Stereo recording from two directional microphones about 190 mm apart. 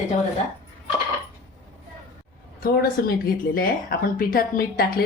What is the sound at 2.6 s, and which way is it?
A woman's voice, 50° left (ahead or behind).